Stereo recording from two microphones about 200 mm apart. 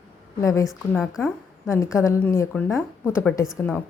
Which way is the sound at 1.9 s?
15° left (ahead or behind).